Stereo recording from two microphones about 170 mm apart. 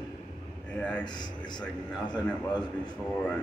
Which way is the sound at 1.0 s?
25° left (ahead or behind).